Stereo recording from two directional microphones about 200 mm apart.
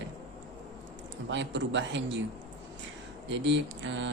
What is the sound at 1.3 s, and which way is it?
Speech, 65° right (ahead or behind).